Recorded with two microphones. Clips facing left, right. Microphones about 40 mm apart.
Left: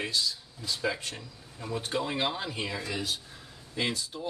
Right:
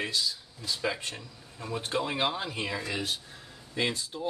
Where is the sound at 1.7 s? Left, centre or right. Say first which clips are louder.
Right 1 dB; centre.